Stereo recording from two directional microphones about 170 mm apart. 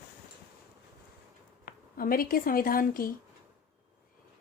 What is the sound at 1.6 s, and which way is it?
Speech, 60° left (ahead or behind).